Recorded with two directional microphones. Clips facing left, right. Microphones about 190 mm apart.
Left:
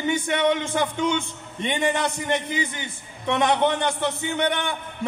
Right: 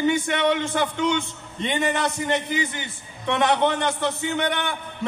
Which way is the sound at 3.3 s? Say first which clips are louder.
Even; 15° left (ahead or behind).